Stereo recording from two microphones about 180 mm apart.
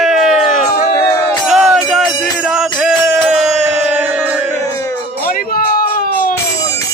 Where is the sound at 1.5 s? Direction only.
Centre (ahead or behind).